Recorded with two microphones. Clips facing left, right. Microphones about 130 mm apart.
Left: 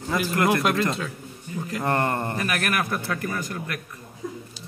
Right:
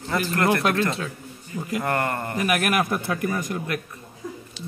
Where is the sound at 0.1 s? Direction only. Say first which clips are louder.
Even; 10° left (ahead or behind).